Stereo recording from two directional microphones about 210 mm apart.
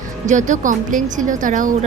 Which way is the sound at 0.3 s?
35° right (ahead or behind).